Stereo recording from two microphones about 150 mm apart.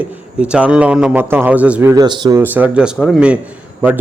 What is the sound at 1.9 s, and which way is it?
Speech, 25° right (ahead or behind).